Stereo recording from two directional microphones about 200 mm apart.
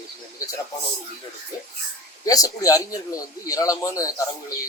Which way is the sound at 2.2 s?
20° left (ahead or behind).